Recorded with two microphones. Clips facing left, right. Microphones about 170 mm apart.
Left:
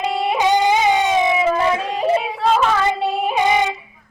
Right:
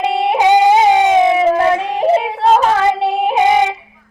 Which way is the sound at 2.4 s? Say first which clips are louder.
Right 5 dB; 45° right (ahead or behind).